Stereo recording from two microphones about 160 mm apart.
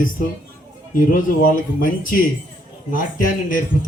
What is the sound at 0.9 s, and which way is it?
A man's voice, 60° left (ahead or behind).